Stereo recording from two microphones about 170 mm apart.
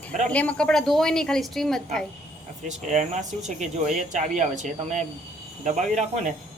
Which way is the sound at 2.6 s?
45° right (ahead or behind).